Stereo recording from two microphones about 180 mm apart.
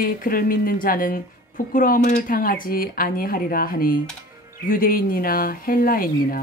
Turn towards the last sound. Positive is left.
turn(degrees=50)  # may be behind; listen again after turning